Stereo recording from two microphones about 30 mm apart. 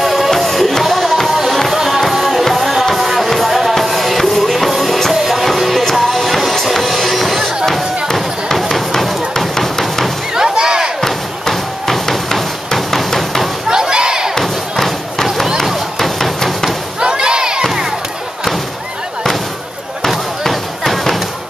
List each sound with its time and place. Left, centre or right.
0.0 s music: centre
3.4 s music: centre
8.5 s music: centre
9.6 s hammer: centre
10.3 s a sound: right
11.0 s a sound: centre
13.7 s slam: right
14.4 s thump: centre
15.5 s chop: centre
17.0 s crowd: right
20.4 s a sound: centre